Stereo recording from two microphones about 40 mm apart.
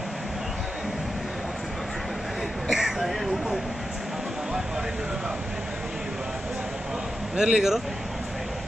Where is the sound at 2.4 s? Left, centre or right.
Centre.